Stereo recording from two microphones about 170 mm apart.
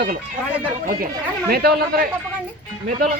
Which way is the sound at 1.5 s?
65° right (ahead or behind).